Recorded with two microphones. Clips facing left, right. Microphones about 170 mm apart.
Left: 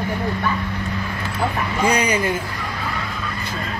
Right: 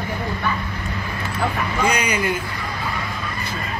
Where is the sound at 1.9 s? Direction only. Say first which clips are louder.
Left 3 dB; 30° left (ahead or behind).